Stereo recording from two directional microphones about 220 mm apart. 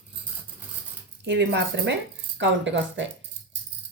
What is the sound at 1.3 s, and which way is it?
A woman's voice, 55° right (ahead or behind).